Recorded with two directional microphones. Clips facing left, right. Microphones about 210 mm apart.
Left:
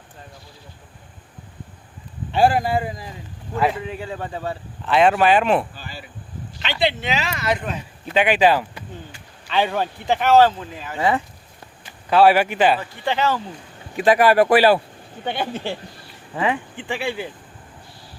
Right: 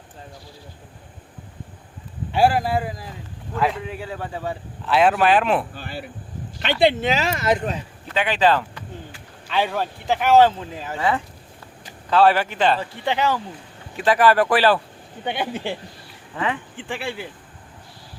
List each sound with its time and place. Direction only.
2.3 s speech: 5° right (ahead or behind)
5.7 s a sound: 60° right (ahead or behind)
6.6 s speech: 50° right (ahead or behind)
8.0 s speech: 15° left (ahead or behind)
9.1 s speech: 5° right (ahead or behind)
10.2 s speech: 15° right (ahead or behind)
12.1 s speech: 10° left (ahead or behind)
13.1 s speech: 15° right (ahead or behind)
13.9 s speech: 15° left (ahead or behind)
15.2 s speech: 15° right (ahead or behind)
16.3 s speech: 15° left (ahead or behind)
16.7 s speech: centre (ahead or behind)